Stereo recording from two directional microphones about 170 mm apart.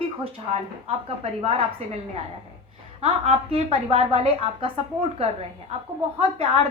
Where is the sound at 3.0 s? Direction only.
35° right (ahead or behind).